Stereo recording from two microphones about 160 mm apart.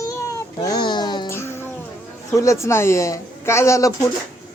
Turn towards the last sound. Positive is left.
turn(degrees=20)  # may be behind; listen again after turning